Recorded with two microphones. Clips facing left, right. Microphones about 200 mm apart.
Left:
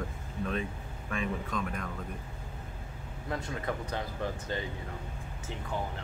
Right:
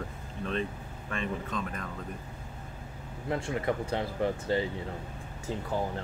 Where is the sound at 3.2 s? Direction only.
25° right (ahead or behind).